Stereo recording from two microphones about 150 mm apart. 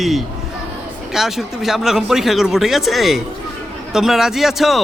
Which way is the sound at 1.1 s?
Centre (ahead or behind).